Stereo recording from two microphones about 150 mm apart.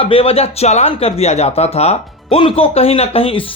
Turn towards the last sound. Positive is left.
turn(degrees=40)  # may be behind; listen again after turning